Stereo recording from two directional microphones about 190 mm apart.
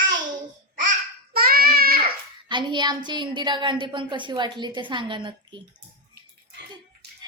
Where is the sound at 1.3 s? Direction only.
50° right (ahead or behind).